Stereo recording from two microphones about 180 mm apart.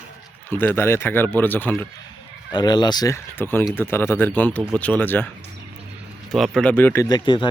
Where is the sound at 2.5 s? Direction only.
25° left (ahead or behind).